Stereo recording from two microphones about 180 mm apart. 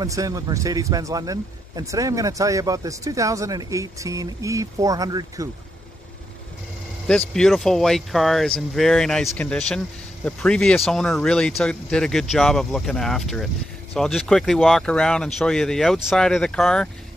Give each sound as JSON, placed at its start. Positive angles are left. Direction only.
{"t": 0.0, "sound": "a man's voice", "side_deg": -20}
{"t": 7.1, "sound": "speech", "side_deg": 5}